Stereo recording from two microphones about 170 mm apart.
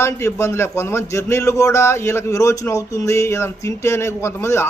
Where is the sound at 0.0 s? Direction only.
15° left (ahead or behind).